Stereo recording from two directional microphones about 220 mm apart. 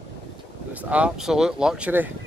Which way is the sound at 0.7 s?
5° right (ahead or behind).